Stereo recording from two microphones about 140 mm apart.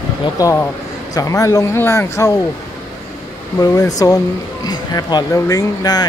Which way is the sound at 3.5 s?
25° left (ahead or behind).